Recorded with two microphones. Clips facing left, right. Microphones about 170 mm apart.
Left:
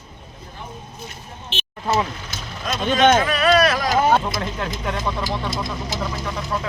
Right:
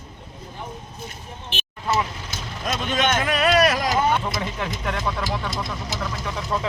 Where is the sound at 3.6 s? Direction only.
20° right (ahead or behind).